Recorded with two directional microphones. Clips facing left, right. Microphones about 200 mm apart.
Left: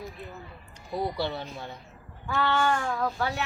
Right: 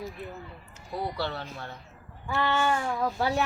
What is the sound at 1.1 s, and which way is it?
Speech, 15° left (ahead or behind).